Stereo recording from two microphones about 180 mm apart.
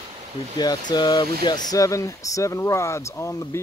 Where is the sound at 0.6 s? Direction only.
25° left (ahead or behind).